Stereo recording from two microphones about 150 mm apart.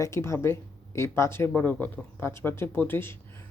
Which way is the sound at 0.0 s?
20° left (ahead or behind).